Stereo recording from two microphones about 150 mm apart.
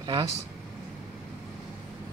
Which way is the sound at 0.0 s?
30° right (ahead or behind).